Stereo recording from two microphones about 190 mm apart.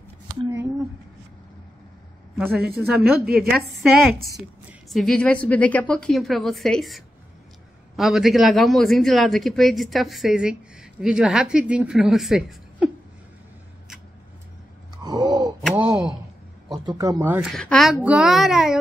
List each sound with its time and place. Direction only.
2.3 s a woman's voice: centre (ahead or behind)
15.0 s a sound: 20° right (ahead or behind)
15.7 s a man's voice: 5° right (ahead or behind)
16.6 s a woman's voice: 20° right (ahead or behind)
17.5 s a man's voice: centre (ahead or behind)